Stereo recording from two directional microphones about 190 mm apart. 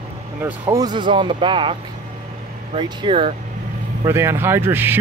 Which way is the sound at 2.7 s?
25° right (ahead or behind).